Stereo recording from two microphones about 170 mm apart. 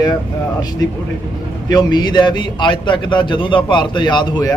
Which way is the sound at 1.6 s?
25° left (ahead or behind).